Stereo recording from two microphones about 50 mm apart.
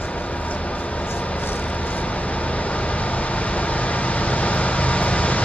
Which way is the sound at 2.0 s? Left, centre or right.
Left.